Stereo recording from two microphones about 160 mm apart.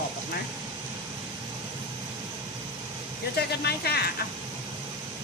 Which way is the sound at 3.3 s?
90° left.